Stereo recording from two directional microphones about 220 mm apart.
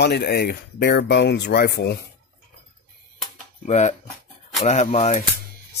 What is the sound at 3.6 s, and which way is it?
Speech, 30° left (ahead or behind).